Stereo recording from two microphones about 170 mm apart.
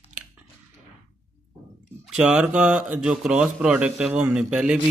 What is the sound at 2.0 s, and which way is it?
Speech, 5° right (ahead or behind).